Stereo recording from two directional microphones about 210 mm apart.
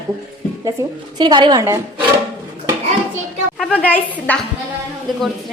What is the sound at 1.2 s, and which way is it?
Speech, 20° right (ahead or behind).